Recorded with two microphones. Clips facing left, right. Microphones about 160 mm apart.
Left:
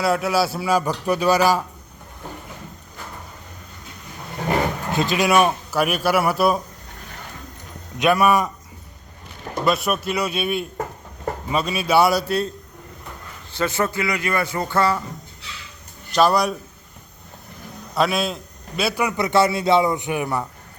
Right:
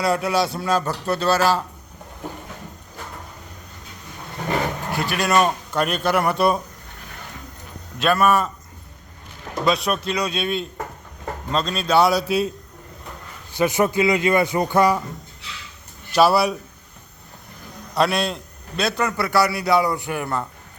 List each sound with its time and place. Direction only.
0.0 s a man's voice: centre (ahead or behind)
4.4 s speech: 20° left (ahead or behind); by 6.6 s 5° left (ahead or behind)
7.9 s a man's voice: 15° left (ahead or behind)
9.6 s a man's voice: 5° left (ahead or behind)
13.5 s speech: 15° right (ahead or behind)
16.1 s a man's voice: 5° right (ahead or behind)
17.9 s a man's voice: centre (ahead or behind)